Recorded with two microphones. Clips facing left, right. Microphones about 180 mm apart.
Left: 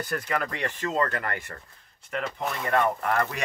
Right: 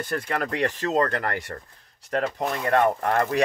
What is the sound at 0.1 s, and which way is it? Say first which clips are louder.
Speech: right 3 dB; 40° right (ahead or behind).